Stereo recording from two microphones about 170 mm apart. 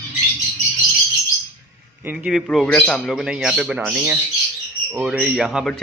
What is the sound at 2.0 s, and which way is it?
Speech, 10° right (ahead or behind).